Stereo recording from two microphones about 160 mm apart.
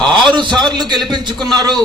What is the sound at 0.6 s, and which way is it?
A man's voice, 25° right (ahead or behind).